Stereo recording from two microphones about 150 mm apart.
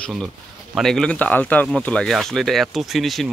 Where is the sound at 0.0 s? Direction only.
5° left (ahead or behind).